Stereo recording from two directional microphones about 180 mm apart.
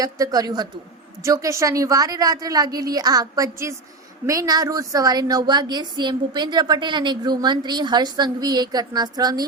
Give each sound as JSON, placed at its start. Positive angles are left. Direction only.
{"t": 0.0, "sound": "a woman's voice", "side_deg": -20}